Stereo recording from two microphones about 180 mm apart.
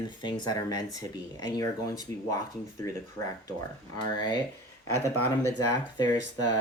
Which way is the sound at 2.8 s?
20° left (ahead or behind).